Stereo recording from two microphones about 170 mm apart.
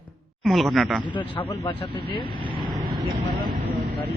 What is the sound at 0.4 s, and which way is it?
Speech, centre (ahead or behind).